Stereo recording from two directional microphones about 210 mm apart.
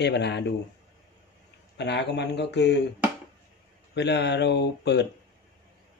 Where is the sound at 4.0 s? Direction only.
55° left (ahead or behind).